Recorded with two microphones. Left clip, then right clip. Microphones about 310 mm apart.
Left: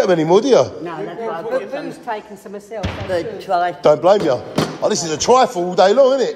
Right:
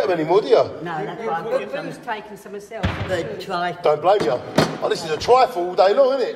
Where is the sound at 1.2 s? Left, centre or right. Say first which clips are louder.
Left 2 dB; left.